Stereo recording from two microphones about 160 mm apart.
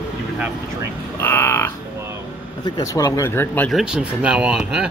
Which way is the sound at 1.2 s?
15° left (ahead or behind).